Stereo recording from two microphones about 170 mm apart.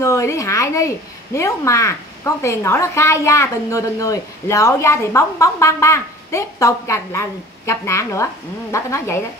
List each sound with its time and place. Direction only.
0.0 s speech: 15° left (ahead or behind)